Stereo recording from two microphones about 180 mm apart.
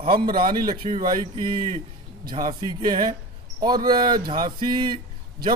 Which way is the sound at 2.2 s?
50° right (ahead or behind).